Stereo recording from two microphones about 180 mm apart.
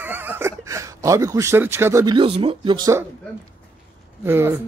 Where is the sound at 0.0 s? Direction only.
10° right (ahead or behind).